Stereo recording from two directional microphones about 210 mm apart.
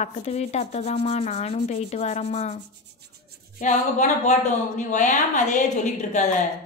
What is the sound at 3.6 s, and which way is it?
Speech, 35° left (ahead or behind).